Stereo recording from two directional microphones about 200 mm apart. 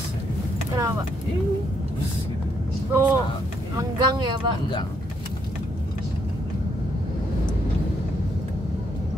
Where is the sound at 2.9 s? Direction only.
10° right (ahead or behind).